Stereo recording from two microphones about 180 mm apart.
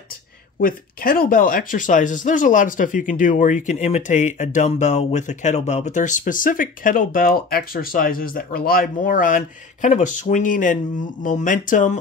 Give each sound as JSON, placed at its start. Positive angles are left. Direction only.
{"t": 0.6, "sound": "speech", "side_deg": 50}